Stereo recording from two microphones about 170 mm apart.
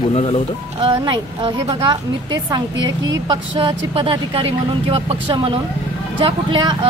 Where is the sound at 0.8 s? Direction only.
30° right (ahead or behind).